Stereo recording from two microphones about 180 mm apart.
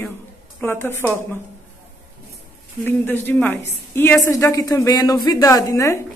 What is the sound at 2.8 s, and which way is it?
A woman's voice, 10° left (ahead or behind).